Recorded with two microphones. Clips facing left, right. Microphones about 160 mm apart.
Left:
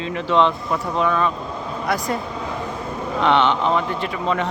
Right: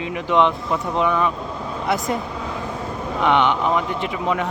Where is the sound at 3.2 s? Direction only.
10° right (ahead or behind).